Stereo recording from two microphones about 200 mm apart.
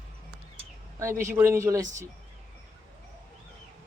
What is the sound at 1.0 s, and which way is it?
Speech, 15° right (ahead or behind).